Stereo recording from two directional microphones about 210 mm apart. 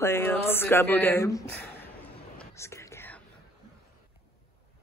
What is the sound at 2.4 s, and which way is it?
Whispering, 15° left (ahead or behind).